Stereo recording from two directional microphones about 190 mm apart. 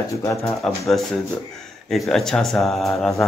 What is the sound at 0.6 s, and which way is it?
Speech, centre (ahead or behind).